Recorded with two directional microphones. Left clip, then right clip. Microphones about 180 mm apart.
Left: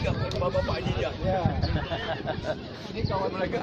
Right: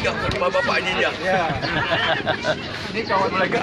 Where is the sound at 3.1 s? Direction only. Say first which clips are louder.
Right 9 dB; 20° right (ahead or behind).